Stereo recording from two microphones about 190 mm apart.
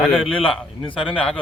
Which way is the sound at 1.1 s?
5° left (ahead or behind).